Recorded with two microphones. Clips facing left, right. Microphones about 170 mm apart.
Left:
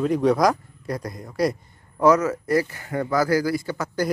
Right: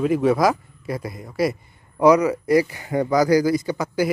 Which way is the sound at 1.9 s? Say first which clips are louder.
Right 3 dB; 15° right (ahead or behind).